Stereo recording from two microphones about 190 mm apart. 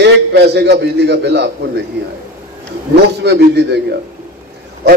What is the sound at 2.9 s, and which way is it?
Speech, 60° right (ahead or behind).